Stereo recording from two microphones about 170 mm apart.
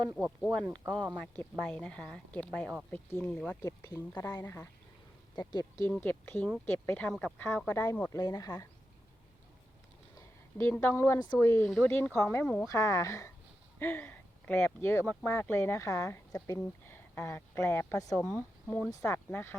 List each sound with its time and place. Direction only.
0.2 s speech: 5° right (ahead or behind)
1.2 s speech: 5° left (ahead or behind)
3.7 s a woman's voice: 20° left (ahead or behind)
6.0 s a woman's voice: 10° left (ahead or behind)
10.2 s a woman's voice: 15° left (ahead or behind)